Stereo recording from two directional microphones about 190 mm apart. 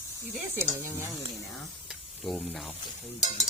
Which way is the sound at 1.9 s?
Centre (ahead or behind).